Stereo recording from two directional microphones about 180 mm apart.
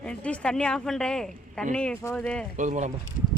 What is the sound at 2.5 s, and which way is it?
Speech, 45° right (ahead or behind).